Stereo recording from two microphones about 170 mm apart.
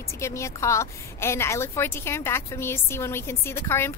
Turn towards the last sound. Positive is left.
turn(degrees=15)  # may be behind; listen again after turning